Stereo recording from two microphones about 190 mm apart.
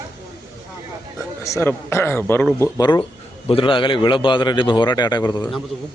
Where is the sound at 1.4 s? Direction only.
15° left (ahead or behind).